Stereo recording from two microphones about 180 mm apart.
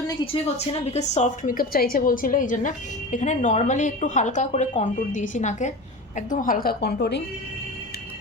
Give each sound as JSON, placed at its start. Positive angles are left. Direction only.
{"t": 0.1, "sound": "a woman's voice", "side_deg": 30}